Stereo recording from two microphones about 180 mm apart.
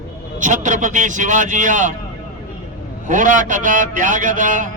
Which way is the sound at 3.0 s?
45° right (ahead or behind).